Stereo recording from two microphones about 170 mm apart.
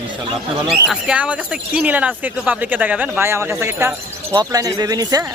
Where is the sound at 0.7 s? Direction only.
5° right (ahead or behind).